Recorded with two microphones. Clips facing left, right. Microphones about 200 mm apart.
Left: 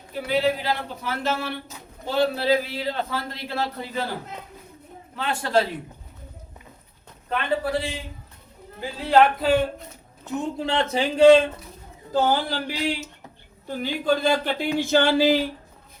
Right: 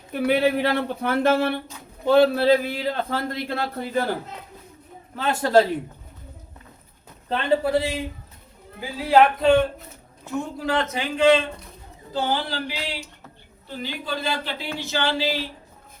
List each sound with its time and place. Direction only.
0.1 s a man's voice: 60° right (ahead or behind)
5.1 s a man's voice: 40° right (ahead or behind)
7.3 s speech: 25° right (ahead or behind)
9.0 s speech: centre (ahead or behind)
10.2 s a man's voice: 25° left (ahead or behind)
12.1 s speech: 45° left (ahead or behind)